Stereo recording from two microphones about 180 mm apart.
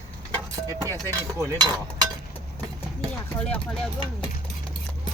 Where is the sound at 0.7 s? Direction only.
20° right (ahead or behind).